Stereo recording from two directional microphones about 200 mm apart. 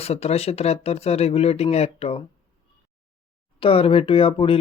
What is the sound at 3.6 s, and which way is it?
Speech, 25° left (ahead or behind).